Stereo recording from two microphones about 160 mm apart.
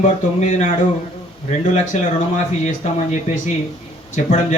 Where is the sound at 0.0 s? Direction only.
45° left (ahead or behind).